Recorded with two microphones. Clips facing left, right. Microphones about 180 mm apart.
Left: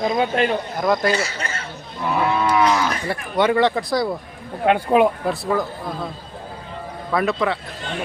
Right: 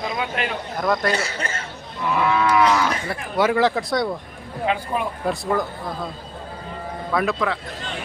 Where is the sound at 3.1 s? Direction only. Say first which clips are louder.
Left 4 dB; 5° right (ahead or behind).